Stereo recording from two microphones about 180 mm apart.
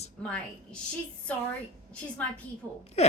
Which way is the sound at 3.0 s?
35° left (ahead or behind).